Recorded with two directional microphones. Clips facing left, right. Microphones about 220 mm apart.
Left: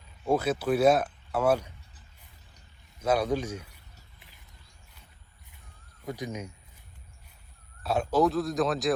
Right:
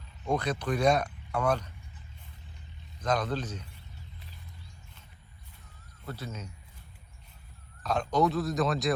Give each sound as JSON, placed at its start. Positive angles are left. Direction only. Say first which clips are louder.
{"t": 0.3, "sound": "speech", "louder": "left 4 dB", "side_deg": 5}
{"t": 3.0, "sound": "speech", "louder": "left 4 dB", "side_deg": 10}
{"t": 6.1, "sound": "speech", "louder": "left 5 dB", "side_deg": 15}
{"t": 7.8, "sound": "speech", "louder": "left 2 dB", "side_deg": 10}